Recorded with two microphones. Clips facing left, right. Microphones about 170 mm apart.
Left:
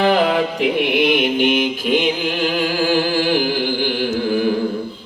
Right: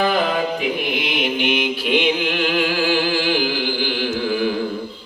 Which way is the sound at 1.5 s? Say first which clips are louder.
Left 2 dB; 45° left (ahead or behind).